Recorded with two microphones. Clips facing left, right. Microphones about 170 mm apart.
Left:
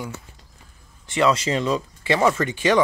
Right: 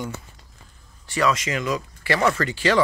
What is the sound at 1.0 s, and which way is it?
Speech, 25° left (ahead or behind).